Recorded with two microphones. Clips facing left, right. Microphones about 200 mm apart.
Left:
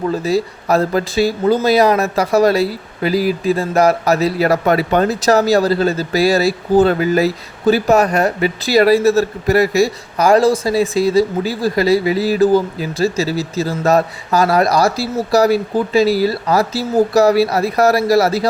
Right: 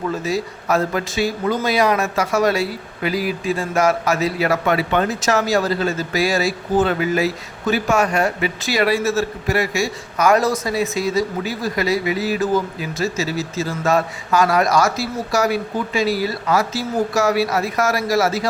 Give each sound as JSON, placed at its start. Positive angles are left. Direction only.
{"t": 0.1, "sound": "speech", "side_deg": 35}